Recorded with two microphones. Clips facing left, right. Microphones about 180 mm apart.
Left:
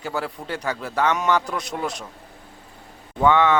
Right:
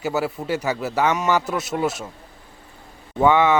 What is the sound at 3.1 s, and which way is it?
Speech, 10° right (ahead or behind).